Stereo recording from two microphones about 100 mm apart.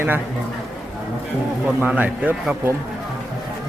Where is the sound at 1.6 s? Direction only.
15° right (ahead or behind).